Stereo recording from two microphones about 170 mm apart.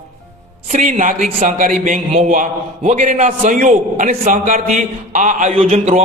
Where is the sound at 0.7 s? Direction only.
45° right (ahead or behind).